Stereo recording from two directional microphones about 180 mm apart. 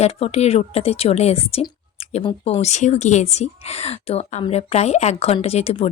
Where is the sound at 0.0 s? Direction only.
35° left (ahead or behind).